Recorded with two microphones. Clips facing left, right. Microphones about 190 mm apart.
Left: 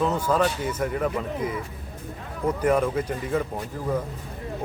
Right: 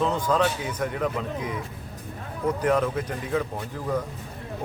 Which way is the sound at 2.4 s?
10° left (ahead or behind).